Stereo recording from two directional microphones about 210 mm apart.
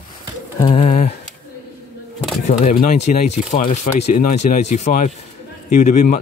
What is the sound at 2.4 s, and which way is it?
Speech, 40° left (ahead or behind).